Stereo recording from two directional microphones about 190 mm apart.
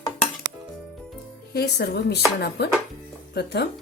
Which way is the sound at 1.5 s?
60° left (ahead or behind).